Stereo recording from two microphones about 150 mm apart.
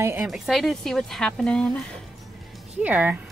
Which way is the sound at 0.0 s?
15° right (ahead or behind).